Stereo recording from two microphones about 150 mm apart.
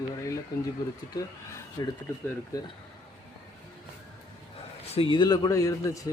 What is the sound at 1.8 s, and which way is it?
Speech, 25° left (ahead or behind).